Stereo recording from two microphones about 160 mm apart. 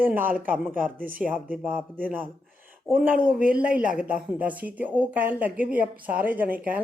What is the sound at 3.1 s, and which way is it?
Speech, 60° right (ahead or behind).